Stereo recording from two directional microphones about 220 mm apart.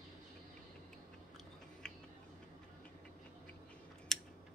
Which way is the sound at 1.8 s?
5° left (ahead or behind).